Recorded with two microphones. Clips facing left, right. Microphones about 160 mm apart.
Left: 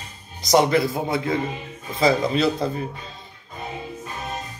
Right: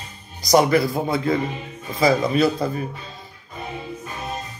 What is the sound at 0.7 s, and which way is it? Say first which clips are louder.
Speech: right 2 dB; 20° left (ahead or behind).